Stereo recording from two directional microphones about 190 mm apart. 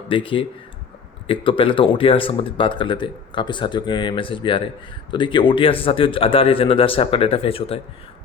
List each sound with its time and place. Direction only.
0.1 s speech: 25° left (ahead or behind)